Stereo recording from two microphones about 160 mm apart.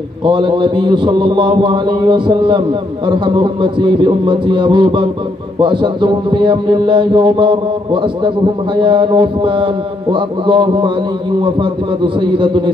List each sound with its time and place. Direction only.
0.2 s a man's voice: 30° right (ahead or behind)
12.2 s a man's voice: 30° right (ahead or behind)